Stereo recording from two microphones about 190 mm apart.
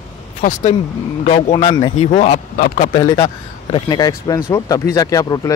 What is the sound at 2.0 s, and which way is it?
Speech, 35° left (ahead or behind).